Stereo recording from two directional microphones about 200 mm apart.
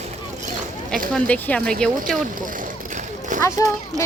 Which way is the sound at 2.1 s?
40° right (ahead or behind).